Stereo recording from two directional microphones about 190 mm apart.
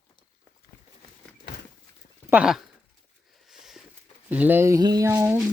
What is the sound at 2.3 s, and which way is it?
Speech, 5° right (ahead or behind).